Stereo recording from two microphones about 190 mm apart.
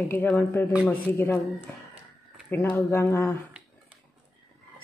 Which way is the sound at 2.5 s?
10° left (ahead or behind).